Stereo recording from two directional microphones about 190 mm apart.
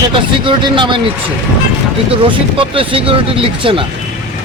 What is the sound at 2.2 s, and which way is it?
Speech, 25° right (ahead or behind).